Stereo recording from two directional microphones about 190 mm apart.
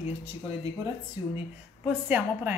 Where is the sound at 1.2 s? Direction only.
15° right (ahead or behind).